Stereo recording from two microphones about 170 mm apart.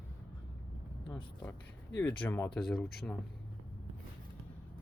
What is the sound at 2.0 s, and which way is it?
Speech, 10° left (ahead or behind).